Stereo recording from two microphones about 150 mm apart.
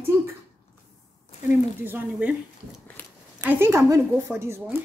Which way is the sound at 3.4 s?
15° right (ahead or behind).